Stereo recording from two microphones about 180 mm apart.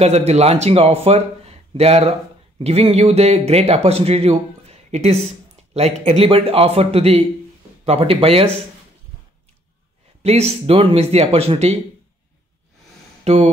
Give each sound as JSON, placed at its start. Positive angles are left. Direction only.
{"t": 0.0, "sound": "a man's voice", "side_deg": -35}
{"t": 10.2, "sound": "a man's voice", "side_deg": -35}
{"t": 13.2, "sound": "speech", "side_deg": -35}